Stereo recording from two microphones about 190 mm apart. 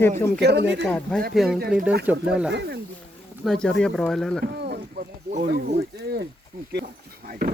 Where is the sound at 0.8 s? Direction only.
5° left (ahead or behind).